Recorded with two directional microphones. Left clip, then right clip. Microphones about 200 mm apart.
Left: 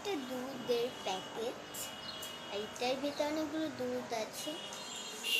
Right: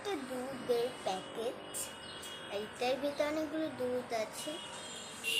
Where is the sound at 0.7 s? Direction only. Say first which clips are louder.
Right 1 dB; 10° right (ahead or behind).